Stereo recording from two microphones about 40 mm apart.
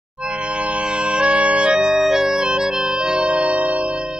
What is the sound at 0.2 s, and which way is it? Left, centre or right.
Music, right.